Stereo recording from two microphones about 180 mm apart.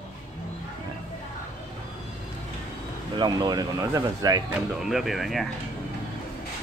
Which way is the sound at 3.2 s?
25° right (ahead or behind).